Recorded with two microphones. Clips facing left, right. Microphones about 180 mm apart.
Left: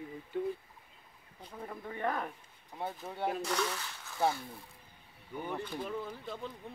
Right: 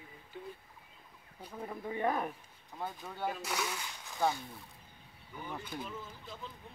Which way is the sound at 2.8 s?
25° left (ahead or behind).